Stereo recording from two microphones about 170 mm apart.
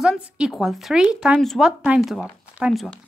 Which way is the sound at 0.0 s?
Centre (ahead or behind).